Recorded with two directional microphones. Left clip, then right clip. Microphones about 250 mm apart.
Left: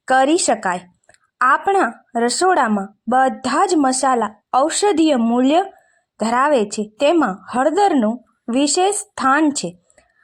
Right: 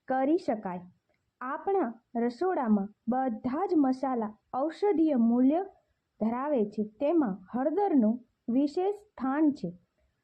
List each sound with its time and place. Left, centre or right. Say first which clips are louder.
0.0 s speech: left 13 dB; centre